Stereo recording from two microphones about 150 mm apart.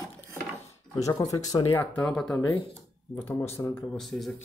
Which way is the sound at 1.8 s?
10° left (ahead or behind).